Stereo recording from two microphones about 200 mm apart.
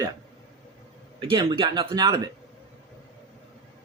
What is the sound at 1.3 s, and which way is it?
Speech, 25° right (ahead or behind).